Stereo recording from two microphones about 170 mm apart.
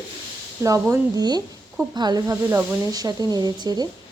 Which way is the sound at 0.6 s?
15° right (ahead or behind).